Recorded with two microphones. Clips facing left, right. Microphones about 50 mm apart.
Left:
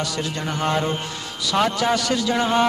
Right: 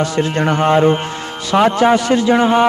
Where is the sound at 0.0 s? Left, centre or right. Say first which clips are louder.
Right 9 dB; right.